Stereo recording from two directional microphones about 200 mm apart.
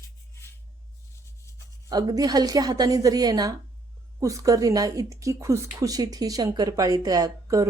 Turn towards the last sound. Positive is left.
turn(degrees=-15)  # may be behind; listen again after turning